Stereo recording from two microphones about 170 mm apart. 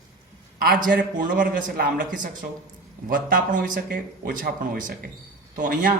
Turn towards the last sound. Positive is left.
turn(degrees=-55)  # may be behind; listen again after turning